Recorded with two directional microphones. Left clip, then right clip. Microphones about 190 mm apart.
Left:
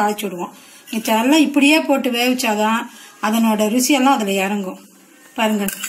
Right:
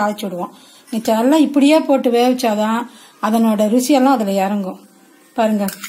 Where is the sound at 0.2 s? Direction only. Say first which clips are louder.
Right 2 dB; 45° right (ahead or behind).